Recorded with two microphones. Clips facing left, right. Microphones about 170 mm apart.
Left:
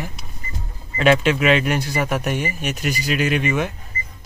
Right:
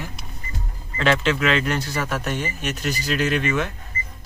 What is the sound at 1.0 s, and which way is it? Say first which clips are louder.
Speech: left 4 dB; 15° left (ahead or behind).